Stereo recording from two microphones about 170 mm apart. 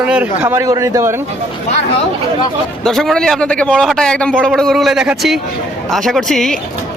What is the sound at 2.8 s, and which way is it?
A man's voice, centre (ahead or behind).